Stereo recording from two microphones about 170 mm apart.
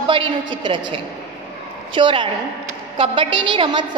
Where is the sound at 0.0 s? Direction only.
30° right (ahead or behind).